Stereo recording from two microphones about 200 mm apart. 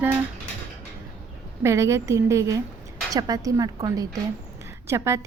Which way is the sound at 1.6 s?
15° right (ahead or behind).